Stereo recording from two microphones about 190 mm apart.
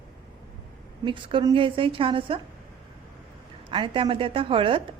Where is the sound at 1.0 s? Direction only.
25° right (ahead or behind).